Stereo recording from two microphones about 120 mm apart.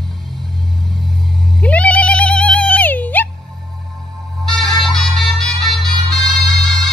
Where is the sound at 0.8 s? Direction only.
Centre (ahead or behind).